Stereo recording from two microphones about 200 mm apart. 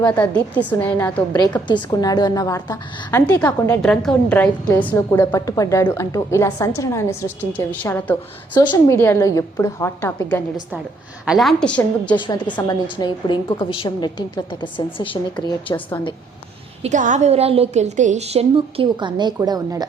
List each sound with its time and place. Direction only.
0.0 s a woman's voice: 5° left (ahead or behind)
1.6 s a woman's voice: 20° left (ahead or behind)
8.5 s a woman's voice: 20° left (ahead or behind)
12.1 s a woman's voice: 25° left (ahead or behind)
16.8 s a woman's voice: 40° right (ahead or behind); by 19.8 s 20° right (ahead or behind)